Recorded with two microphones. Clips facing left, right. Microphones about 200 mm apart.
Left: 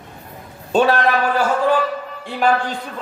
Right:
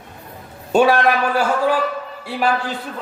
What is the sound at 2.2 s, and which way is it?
Speech, 5° right (ahead or behind).